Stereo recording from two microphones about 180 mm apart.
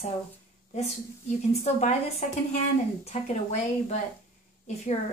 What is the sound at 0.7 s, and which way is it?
A woman's voice, 40° left (ahead or behind).